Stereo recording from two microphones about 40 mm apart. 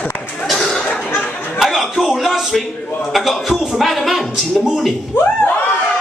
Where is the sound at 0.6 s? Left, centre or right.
Centre.